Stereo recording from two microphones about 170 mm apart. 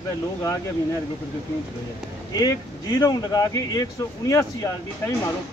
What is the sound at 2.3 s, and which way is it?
Speech, 25° left (ahead or behind).